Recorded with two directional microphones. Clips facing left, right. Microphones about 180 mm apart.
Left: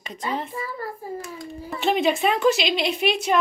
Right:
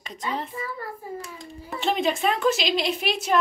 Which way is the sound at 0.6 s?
35° left (ahead or behind).